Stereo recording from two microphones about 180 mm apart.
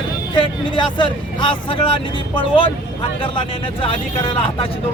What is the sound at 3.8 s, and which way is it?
Speech, 30° left (ahead or behind).